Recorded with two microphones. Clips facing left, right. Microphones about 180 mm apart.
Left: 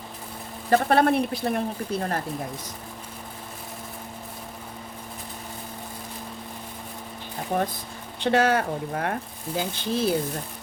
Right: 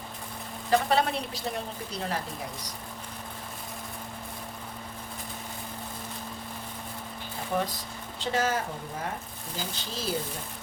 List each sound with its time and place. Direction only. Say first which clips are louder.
0.7 s a woman's voice: left 5 dB; 55° left (ahead or behind)
7.5 s speech: left 4 dB; 45° left (ahead or behind)
8.2 s a woman's voice: left 7 dB; 65° left (ahead or behind)